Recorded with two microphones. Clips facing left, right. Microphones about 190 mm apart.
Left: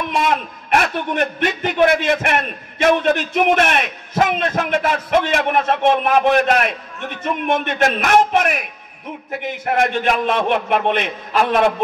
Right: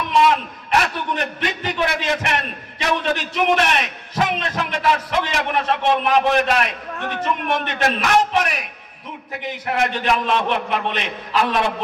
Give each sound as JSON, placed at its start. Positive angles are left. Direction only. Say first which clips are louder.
{"t": 0.1, "sound": "a man's voice", "louder": "right 5 dB", "side_deg": 50}
{"t": 7.0, "sound": "a man's voice", "louder": "right 3 dB", "side_deg": -60}
{"t": 7.6, "sound": "a man's voice", "louder": "left 3 dB", "side_deg": 50}
{"t": 9.8, "sound": "a man's voice", "louder": "left 2 dB", "side_deg": 50}